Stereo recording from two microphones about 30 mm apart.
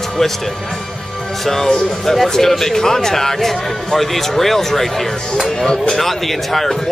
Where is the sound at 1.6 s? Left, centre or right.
Centre.